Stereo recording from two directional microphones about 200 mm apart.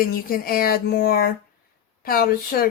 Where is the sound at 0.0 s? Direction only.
45° left (ahead or behind).